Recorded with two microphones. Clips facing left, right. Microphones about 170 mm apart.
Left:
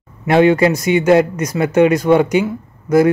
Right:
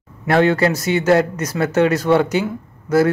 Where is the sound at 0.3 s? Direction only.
15° left (ahead or behind).